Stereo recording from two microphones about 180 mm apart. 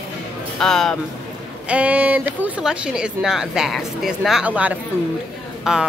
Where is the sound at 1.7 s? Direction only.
10° right (ahead or behind).